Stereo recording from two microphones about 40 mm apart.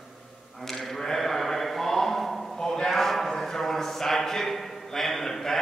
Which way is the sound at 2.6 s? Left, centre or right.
Centre.